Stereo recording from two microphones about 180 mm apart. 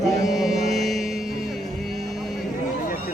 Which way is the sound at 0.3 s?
Centre (ahead or behind).